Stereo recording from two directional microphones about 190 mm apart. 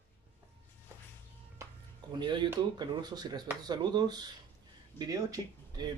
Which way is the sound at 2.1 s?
25° right (ahead or behind).